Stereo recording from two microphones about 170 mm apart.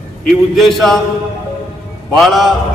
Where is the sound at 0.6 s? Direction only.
Centre (ahead or behind).